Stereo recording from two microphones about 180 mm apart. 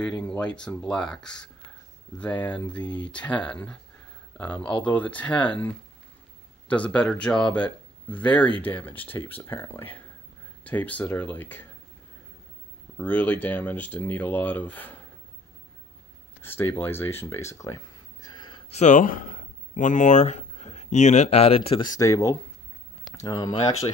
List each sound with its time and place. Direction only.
0.2 s speech: 5° left (ahead or behind)
12.9 s speech: 10° left (ahead or behind)
16.4 s speech: 10° left (ahead or behind)
18.8 s speech: 45° left (ahead or behind); by 23.5 s 20° left (ahead or behind)